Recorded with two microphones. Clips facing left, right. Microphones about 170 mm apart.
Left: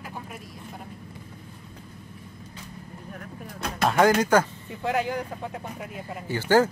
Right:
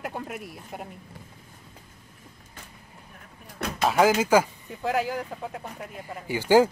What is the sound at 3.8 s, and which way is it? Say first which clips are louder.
Speech: left 1 dB; 5° right (ahead or behind).